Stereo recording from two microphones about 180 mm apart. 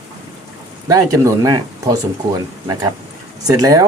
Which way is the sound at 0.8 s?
20° right (ahead or behind).